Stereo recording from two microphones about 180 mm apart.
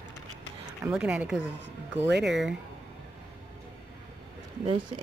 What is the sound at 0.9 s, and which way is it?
Speech, 5° right (ahead or behind).